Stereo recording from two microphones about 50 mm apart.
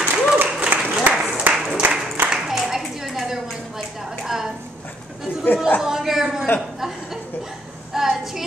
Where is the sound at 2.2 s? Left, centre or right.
Centre.